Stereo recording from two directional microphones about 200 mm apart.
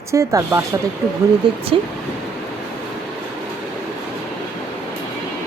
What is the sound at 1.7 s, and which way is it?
Speech, 25° right (ahead or behind).